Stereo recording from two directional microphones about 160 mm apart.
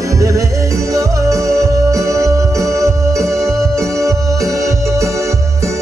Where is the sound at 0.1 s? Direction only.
20° right (ahead or behind).